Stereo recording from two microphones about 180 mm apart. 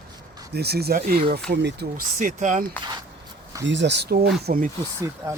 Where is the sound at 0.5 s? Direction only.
60° right (ahead or behind).